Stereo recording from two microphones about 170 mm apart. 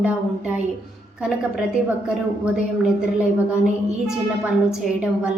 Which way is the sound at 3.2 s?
5° right (ahead or behind).